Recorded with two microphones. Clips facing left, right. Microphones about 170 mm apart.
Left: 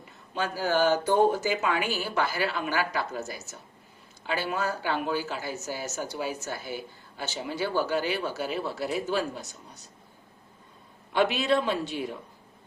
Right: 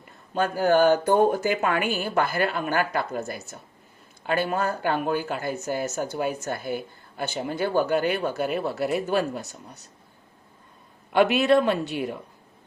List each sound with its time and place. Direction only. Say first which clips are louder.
0.3 s speech: right 6 dB; 55° right (ahead or behind)
11.1 s speech: right 5 dB; 60° right (ahead or behind)